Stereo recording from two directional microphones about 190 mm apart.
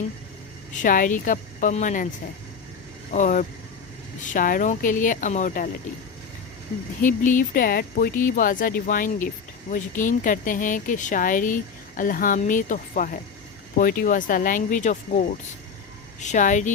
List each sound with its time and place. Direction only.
0.8 s speech: 45° left (ahead or behind)
3.1 s speech: 40° left (ahead or behind)
7.0 s speech: 45° left (ahead or behind)
16.2 s speech: 40° left (ahead or behind)